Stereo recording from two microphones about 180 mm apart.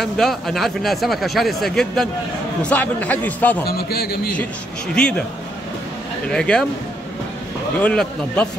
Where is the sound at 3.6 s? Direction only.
60° left (ahead or behind).